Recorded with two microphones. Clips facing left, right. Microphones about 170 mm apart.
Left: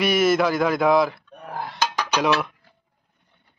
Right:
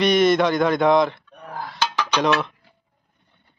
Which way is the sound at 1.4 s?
25° left (ahead or behind).